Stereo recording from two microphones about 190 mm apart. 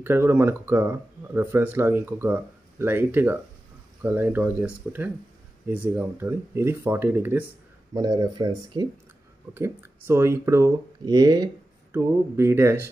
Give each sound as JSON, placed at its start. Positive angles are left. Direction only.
{"t": 0.0, "sound": "speech", "side_deg": -10}
{"t": 7.9, "sound": "speech", "side_deg": -20}